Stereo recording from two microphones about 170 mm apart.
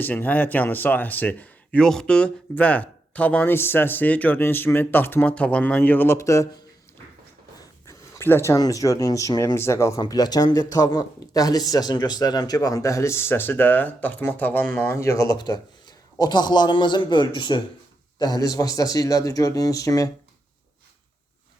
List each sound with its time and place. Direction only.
0.0 s speech: 10° left (ahead or behind)
7.9 s speech: 15° left (ahead or behind)